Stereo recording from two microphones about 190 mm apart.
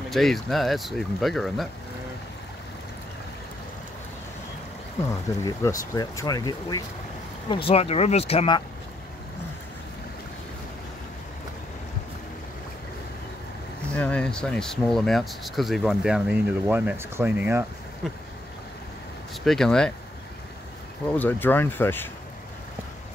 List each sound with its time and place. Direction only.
0.1 s speech: centre (ahead or behind)
5.4 s speech: 15° left (ahead or behind)
13.9 s speech: 5° left (ahead or behind)
19.4 s speech: centre (ahead or behind)
21.1 s speech: 10° left (ahead or behind)